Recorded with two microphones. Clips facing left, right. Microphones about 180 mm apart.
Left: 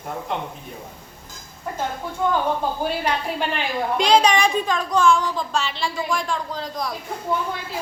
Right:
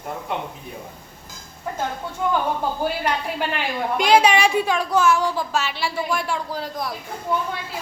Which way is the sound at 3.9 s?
5° right (ahead or behind).